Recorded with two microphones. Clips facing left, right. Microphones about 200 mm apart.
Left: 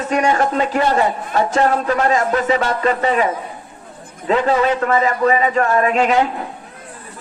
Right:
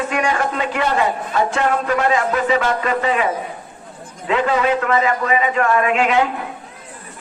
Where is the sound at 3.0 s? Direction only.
40° left (ahead or behind).